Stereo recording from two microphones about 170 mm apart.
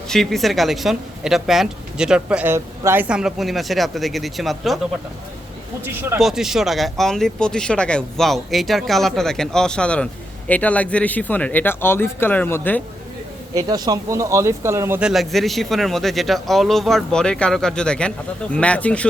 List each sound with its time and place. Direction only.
0.1 s speech: centre (ahead or behind)
5.8 s speech: 15° right (ahead or behind)
6.1 s speech: centre (ahead or behind)
13.5 s speech: 20° right (ahead or behind)
15.1 s speech: centre (ahead or behind)